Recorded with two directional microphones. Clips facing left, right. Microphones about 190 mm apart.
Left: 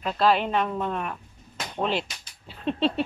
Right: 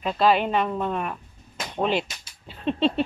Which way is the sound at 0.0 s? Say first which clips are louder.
Right 2 dB; centre (ahead or behind).